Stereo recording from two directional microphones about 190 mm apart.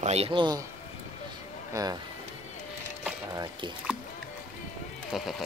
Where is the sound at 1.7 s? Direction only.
20° right (ahead or behind).